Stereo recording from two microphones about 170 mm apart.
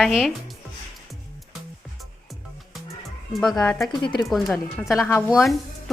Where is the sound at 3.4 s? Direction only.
Centre (ahead or behind).